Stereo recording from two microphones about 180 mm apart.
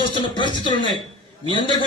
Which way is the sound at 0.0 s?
25° left (ahead or behind).